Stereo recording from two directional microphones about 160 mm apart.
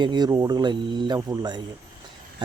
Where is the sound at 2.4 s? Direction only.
30° right (ahead or behind).